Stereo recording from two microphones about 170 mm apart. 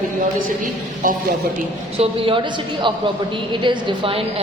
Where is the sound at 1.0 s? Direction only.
55° right (ahead or behind).